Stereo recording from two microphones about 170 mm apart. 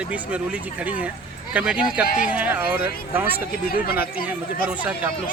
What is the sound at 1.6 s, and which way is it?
Speech, 5° right (ahead or behind).